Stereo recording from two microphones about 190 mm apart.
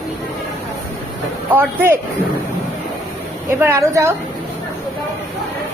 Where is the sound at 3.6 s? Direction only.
15° right (ahead or behind).